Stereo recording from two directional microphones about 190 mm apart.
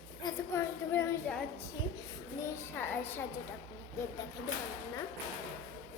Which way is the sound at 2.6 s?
10° left (ahead or behind).